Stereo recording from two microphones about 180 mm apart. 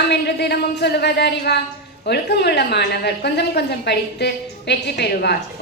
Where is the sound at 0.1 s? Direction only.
65° left (ahead or behind).